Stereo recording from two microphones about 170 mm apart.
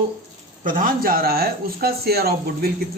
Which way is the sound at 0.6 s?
55° right (ahead or behind).